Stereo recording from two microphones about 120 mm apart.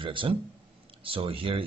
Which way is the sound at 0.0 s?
45° right (ahead or behind).